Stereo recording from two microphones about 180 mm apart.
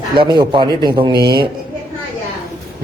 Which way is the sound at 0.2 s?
25° right (ahead or behind).